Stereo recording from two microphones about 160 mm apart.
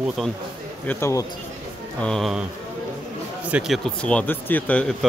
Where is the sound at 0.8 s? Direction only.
15° left (ahead or behind).